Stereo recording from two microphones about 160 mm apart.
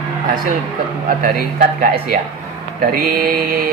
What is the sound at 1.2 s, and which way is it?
Speech, 65° right (ahead or behind).